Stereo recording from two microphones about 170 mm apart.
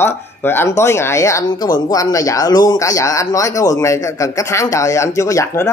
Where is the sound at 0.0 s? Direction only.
15° left (ahead or behind).